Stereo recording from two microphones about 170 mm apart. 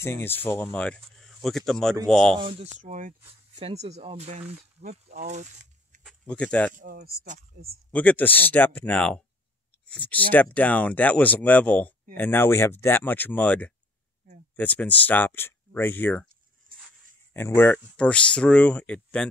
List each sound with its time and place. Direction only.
0.0 s speech: 15° left (ahead or behind)
2.3 s speech: 35° right (ahead or behind); by 3.2 s 50° right (ahead or behind)
3.3 s speech: 35° right (ahead or behind)
6.0 s speech: 5° left (ahead or behind)
6.7 s speech: 55° right (ahead or behind)
7.6 s speech: 45° right (ahead or behind)
7.9 s speech: 10° left (ahead or behind)
16.7 s a sound: 60° right (ahead or behind)
17.3 s speech: 15° left (ahead or behind)